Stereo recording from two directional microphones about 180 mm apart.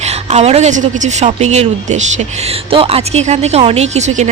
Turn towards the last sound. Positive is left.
turn(degrees=-40)  # may be behind; listen again after turning